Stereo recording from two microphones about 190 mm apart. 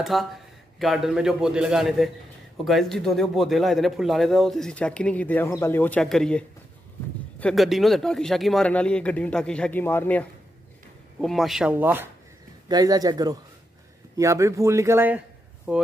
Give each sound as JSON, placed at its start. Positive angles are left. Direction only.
{"t": 0.0, "sound": "a man's voice", "side_deg": 0}